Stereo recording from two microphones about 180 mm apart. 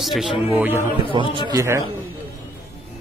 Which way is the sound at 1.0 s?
30° right (ahead or behind).